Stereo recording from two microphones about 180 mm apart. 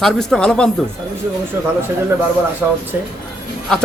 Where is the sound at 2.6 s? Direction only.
10° right (ahead or behind).